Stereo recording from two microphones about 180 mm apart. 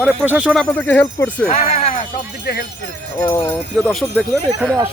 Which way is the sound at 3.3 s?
20° left (ahead or behind).